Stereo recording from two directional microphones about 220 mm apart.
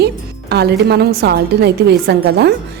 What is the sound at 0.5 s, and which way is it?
Speech, 50° right (ahead or behind).